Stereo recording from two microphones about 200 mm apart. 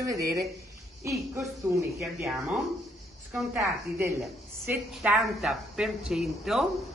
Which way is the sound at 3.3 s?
10° right (ahead or behind).